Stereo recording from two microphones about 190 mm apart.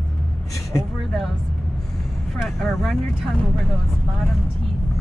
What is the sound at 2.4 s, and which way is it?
Speech, centre (ahead or behind).